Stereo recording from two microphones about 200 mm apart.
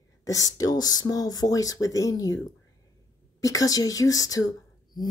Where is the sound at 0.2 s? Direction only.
15° left (ahead or behind).